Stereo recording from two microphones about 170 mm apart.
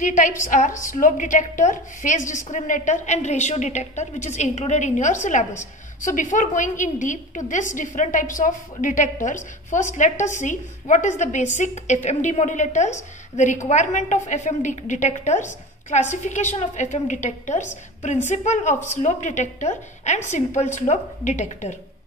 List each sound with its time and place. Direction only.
0.0 s a woman's voice: 45° left (ahead or behind)